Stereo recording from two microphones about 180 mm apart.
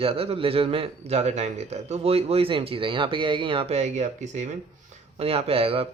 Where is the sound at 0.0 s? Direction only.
30° right (ahead or behind).